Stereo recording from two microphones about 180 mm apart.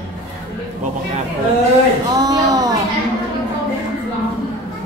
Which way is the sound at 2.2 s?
20° right (ahead or behind).